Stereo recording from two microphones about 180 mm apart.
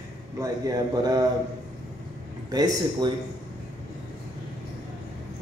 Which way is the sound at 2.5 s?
25° right (ahead or behind).